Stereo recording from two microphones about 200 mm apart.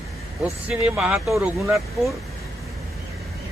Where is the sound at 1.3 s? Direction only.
15° right (ahead or behind).